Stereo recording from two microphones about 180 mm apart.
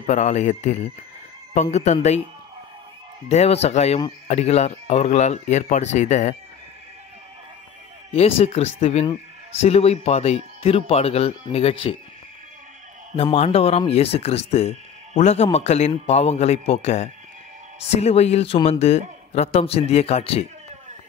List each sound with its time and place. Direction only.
0.0 s speech: 40° left (ahead or behind)
3.3 s speech: 35° left (ahead or behind)
8.1 s speech: 35° left (ahead or behind)
13.1 s speech: 30° left (ahead or behind)